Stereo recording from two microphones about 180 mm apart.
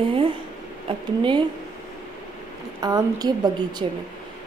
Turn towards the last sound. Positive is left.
turn(degrees=-30)  # may be behind; listen again after turning